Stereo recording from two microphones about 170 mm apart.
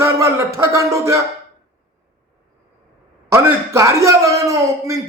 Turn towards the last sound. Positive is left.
turn(degrees=-20)  # may be behind; listen again after turning